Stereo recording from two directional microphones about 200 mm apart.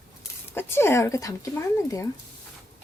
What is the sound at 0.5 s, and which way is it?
Speech, 10° left (ahead or behind).